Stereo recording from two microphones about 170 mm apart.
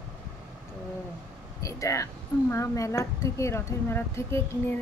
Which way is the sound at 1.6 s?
20° left (ahead or behind).